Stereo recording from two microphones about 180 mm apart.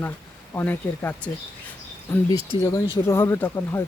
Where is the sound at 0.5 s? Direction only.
10° left (ahead or behind).